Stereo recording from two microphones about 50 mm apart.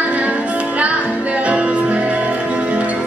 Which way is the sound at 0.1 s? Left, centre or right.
Right.